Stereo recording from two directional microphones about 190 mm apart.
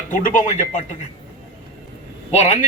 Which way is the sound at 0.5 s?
35° left (ahead or behind).